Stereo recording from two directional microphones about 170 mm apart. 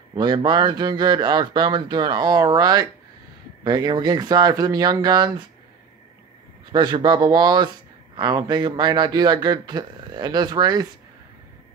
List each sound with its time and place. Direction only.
0.1 s speech: 25° right (ahead or behind)
6.7 s speech: 25° right (ahead or behind)